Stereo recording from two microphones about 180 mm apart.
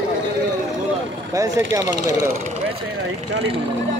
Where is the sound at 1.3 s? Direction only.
20° right (ahead or behind).